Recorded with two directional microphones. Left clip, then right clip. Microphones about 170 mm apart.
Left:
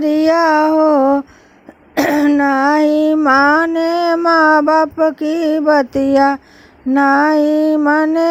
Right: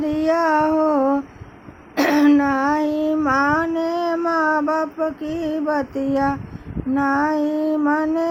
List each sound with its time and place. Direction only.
0.0 s female singing: 40° left (ahead or behind)
2.0 s throat clearing: 40° left (ahead or behind)
2.4 s child singing: 45° left (ahead or behind)
3.2 s a sound: 45° left (ahead or behind)
4.3 s female singing: 45° left (ahead or behind)
6.9 s child singing: 45° left (ahead or behind)